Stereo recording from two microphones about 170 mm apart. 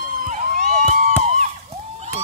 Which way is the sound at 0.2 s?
45° right (ahead or behind).